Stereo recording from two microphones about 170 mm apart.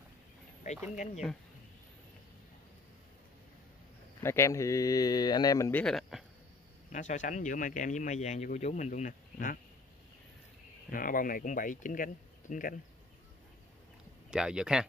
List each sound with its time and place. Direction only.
4.2 s speech: 15° left (ahead or behind)
6.9 s speech: 45° left (ahead or behind)
10.9 s speech: 55° left (ahead or behind)
14.3 s speech: 5° right (ahead or behind)